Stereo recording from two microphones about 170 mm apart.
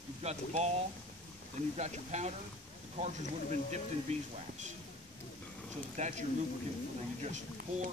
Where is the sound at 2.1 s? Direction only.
45° right (ahead or behind).